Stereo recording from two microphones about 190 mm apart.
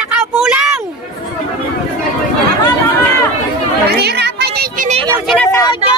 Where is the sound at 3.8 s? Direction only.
60° right (ahead or behind).